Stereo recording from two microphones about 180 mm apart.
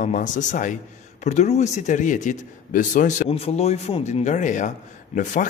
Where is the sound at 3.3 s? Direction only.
35° left (ahead or behind).